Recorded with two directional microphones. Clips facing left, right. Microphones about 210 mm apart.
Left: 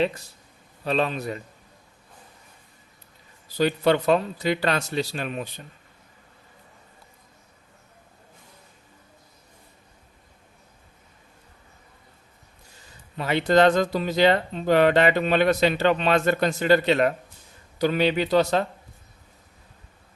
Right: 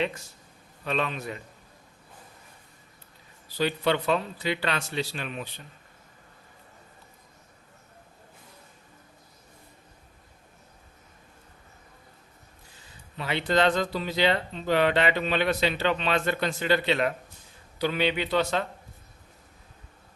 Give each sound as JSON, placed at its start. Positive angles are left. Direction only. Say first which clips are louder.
{"t": 0.0, "sound": "speech", "louder": "left 5 dB", "side_deg": 35}
{"t": 3.6, "sound": "speech", "louder": "left 5 dB", "side_deg": 45}
{"t": 13.1, "sound": "speech", "louder": "left 6 dB", "side_deg": 45}